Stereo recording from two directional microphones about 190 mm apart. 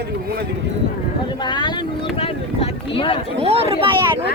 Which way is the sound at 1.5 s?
25° left (ahead or behind).